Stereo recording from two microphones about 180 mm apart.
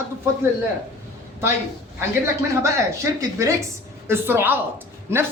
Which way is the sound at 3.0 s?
15° right (ahead or behind).